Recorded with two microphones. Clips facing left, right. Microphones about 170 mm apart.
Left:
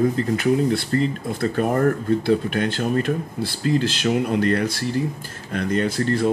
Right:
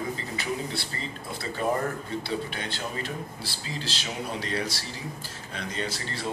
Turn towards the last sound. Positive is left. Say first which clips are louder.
# left 13 dB
turn(degrees=55)  # may be behind; listen again after turning